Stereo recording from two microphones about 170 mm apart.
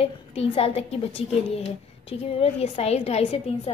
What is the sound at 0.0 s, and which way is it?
A woman's voice, 35° left (ahead or behind).